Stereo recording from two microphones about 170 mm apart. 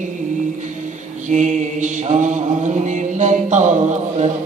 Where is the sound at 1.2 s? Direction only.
45° right (ahead or behind).